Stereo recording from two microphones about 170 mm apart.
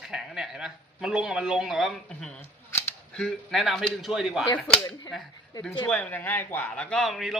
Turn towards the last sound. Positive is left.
turn(degrees=0)  # may be behind; listen again after turning